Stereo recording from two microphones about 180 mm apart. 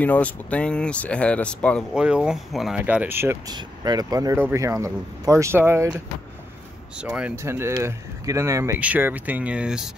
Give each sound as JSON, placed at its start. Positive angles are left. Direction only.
{"t": 0.0, "sound": "speech", "side_deg": 10}
{"t": 2.0, "sound": "speech", "side_deg": -5}